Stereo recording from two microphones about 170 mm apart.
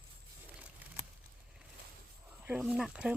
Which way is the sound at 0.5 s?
10° right (ahead or behind).